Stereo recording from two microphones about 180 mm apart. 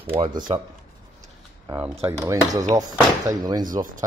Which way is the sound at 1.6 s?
15° right (ahead or behind).